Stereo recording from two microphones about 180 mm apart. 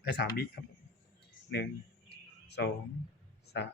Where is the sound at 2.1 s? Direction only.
70° left (ahead or behind).